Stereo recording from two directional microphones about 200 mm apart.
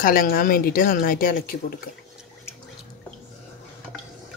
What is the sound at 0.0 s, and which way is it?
Speech, 45° left (ahead or behind).